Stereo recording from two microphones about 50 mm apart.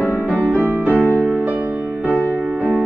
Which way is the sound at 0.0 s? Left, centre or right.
Left.